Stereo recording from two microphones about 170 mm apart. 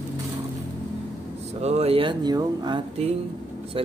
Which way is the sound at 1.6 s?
40° right (ahead or behind).